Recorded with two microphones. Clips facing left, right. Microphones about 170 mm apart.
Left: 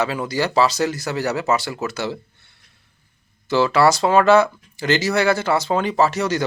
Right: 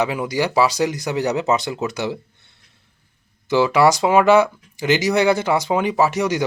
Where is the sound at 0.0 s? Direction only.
15° right (ahead or behind).